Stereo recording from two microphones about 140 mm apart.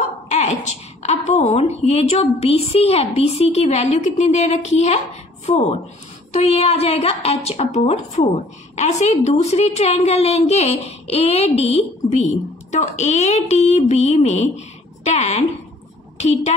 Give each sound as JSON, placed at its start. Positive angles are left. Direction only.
{"t": 1.0, "sound": "a woman's voice", "side_deg": 50}